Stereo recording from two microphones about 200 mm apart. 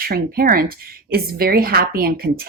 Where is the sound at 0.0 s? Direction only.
50° right (ahead or behind).